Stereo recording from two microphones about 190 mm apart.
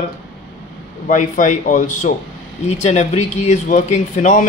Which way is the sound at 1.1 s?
40° left (ahead or behind).